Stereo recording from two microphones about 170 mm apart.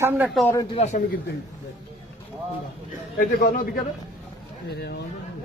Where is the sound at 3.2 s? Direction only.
60° left (ahead or behind).